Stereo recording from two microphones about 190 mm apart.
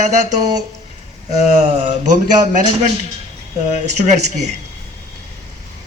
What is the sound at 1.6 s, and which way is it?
Speech, 40° right (ahead or behind).